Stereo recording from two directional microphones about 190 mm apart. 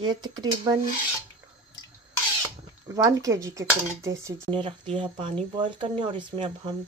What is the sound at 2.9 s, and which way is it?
Speech, 15° right (ahead or behind).